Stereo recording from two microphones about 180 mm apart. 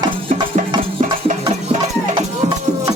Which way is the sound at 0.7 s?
30° right (ahead or behind).